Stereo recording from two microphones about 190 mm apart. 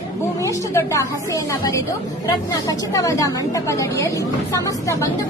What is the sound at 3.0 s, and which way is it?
A woman's voice, 15° left (ahead or behind).